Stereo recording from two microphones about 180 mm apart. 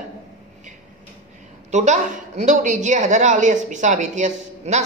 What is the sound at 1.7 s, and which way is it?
A woman's voice, 40° right (ahead or behind).